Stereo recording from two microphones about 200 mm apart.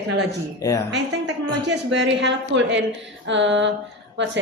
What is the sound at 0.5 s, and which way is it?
Speech, 15° left (ahead or behind).